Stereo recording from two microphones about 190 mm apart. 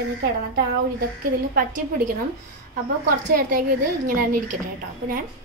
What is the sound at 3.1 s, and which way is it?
A woman's voice, 50° right (ahead or behind).